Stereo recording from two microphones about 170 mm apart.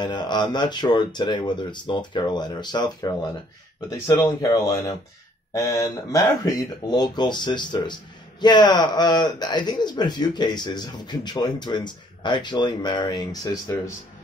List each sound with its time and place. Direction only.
0.0 s speech: 25° left (ahead or behind)